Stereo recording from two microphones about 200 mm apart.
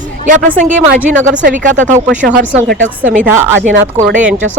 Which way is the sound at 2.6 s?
70° right (ahead or behind).